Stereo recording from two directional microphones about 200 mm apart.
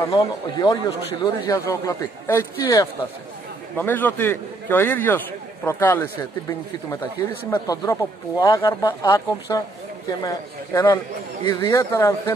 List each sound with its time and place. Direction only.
0.1 s a man's voice: 15° left (ahead or behind)
7.5 s a man's voice: 15° left (ahead or behind)